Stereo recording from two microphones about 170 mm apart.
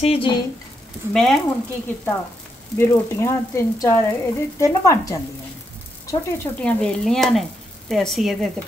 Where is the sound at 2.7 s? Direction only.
15° left (ahead or behind).